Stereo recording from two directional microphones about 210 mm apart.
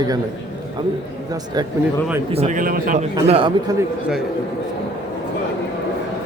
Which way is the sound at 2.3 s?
35° right (ahead or behind).